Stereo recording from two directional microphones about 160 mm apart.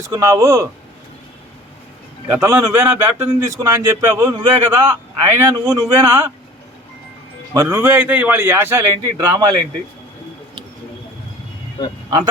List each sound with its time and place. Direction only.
0.1 s speech: 20° right (ahead or behind)
2.2 s a man's voice: 15° right (ahead or behind)
7.5 s a man's voice: 15° right (ahead or behind)